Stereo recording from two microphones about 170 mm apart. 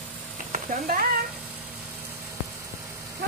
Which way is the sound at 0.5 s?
55° right (ahead or behind).